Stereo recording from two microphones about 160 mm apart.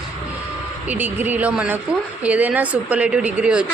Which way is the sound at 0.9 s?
10° right (ahead or behind).